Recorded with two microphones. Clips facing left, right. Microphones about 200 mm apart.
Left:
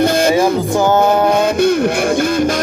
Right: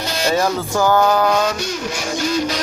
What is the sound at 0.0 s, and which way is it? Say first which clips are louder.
Music: left 8 dB; 55° left (ahead or behind).